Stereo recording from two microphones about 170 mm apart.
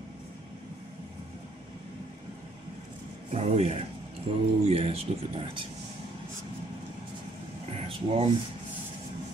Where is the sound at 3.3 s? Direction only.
35° right (ahead or behind).